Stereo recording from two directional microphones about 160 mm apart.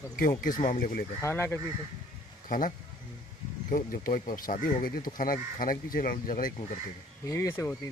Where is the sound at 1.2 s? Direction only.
15° left (ahead or behind).